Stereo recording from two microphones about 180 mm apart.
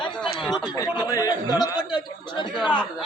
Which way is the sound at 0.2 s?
Centre (ahead or behind).